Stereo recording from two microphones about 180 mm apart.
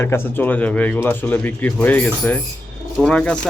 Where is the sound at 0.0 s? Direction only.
15° left (ahead or behind).